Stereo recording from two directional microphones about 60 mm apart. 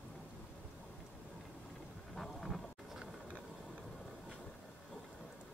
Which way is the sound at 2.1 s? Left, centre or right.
Centre.